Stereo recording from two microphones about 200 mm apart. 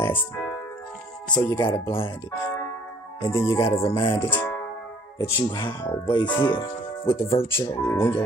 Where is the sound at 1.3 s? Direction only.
20° left (ahead or behind).